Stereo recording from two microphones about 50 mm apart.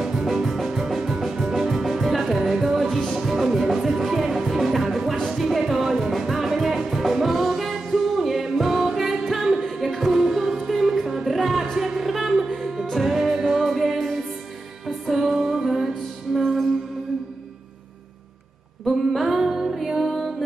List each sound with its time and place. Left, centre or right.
0.0 s music: centre
18.9 s music: centre